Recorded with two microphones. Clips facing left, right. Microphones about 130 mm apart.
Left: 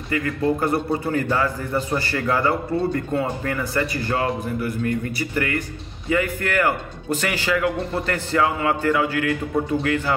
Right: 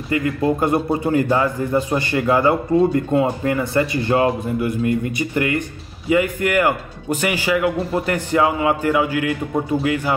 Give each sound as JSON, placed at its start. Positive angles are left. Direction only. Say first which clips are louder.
{"t": 0.1, "sound": "a man's voice", "louder": "right 3 dB", "side_deg": -20}